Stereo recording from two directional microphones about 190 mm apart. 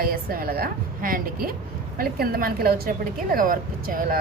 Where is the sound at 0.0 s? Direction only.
50° right (ahead or behind).